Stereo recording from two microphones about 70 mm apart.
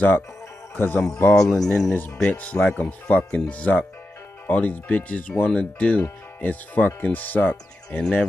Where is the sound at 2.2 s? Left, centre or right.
Centre.